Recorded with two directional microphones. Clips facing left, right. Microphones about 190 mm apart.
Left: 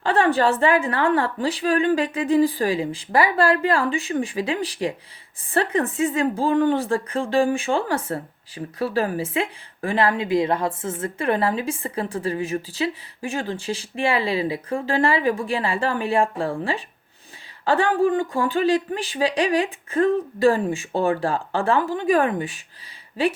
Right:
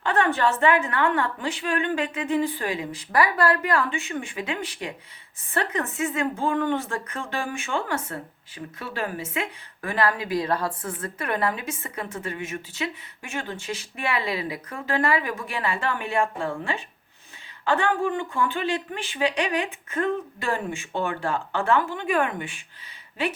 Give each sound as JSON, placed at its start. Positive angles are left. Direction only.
{"t": 0.0, "sound": "a woman's voice", "side_deg": 30}